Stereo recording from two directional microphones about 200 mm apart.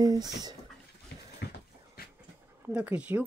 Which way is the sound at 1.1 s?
55° left (ahead or behind).